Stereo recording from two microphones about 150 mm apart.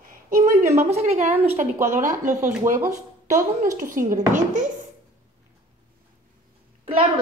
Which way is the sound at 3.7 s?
60° right (ahead or behind).